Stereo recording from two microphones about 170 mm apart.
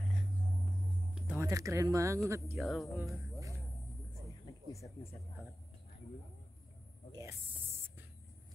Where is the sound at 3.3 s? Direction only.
20° right (ahead or behind).